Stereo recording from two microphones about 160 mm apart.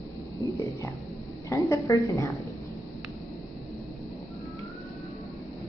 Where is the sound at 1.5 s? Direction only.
20° left (ahead or behind).